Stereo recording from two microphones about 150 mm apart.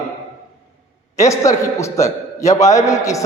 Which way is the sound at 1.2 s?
20° left (ahead or behind).